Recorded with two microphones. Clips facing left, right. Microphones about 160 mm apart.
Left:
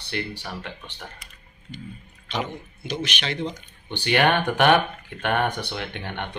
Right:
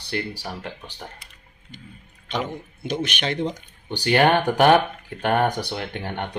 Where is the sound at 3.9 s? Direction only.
40° right (ahead or behind).